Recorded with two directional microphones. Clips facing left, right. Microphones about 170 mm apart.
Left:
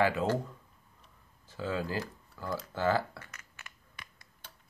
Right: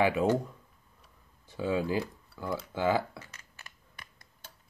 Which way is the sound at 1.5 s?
15° right (ahead or behind).